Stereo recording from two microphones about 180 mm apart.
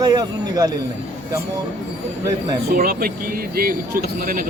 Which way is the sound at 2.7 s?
55° right (ahead or behind).